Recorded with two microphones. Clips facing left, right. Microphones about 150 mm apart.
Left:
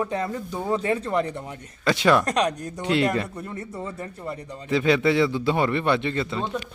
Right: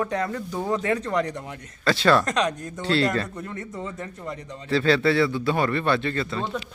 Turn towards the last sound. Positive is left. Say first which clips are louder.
# left 1 dB
turn(degrees=20)  # may be behind; listen again after turning